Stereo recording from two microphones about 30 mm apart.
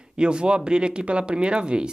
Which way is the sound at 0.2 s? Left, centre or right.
Right.